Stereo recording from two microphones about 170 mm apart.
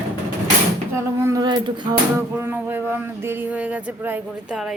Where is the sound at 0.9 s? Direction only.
15° right (ahead or behind).